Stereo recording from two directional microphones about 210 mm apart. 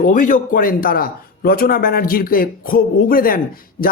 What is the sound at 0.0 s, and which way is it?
A man's voice, 40° left (ahead or behind).